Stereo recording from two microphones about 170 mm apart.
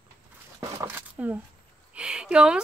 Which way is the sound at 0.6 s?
15° right (ahead or behind).